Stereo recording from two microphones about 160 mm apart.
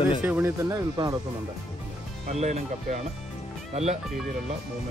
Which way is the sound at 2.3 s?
45° right (ahead or behind).